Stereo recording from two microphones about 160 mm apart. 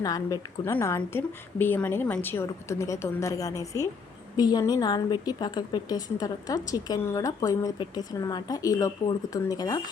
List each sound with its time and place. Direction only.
0.0 s a woman's voice: 20° left (ahead or behind)